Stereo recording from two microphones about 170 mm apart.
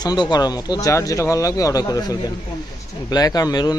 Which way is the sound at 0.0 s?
25° left (ahead or behind).